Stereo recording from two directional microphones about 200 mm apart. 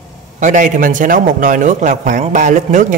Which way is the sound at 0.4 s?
40° right (ahead or behind).